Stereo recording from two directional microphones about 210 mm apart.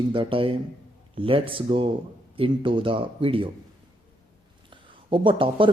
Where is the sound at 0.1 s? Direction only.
25° right (ahead or behind).